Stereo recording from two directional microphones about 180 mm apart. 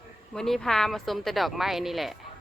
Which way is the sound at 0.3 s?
Centre (ahead or behind).